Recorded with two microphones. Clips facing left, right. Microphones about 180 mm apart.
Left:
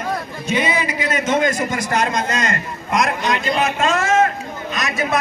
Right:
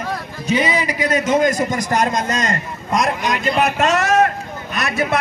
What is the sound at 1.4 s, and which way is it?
A man's voice, 40° right (ahead or behind).